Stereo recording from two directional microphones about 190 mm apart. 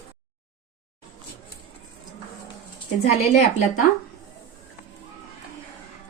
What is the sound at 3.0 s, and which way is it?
Speech, 35° left (ahead or behind).